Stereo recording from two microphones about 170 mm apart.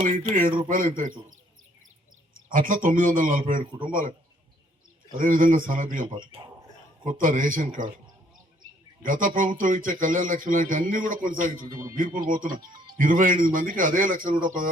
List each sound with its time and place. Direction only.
0.0 s speech: 55° right (ahead or behind)
2.5 s speech: 50° right (ahead or behind)
3.7 s speech: 30° right (ahead or behind)
5.1 s speech: 55° right (ahead or behind)
6.1 s speech: 30° right (ahead or behind)
7.0 s speech: 50° right (ahead or behind)
9.0 s speech: 55° right (ahead or behind)